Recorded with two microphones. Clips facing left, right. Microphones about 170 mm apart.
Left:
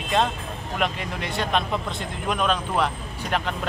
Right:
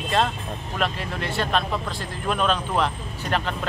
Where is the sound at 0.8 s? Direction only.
15° left (ahead or behind).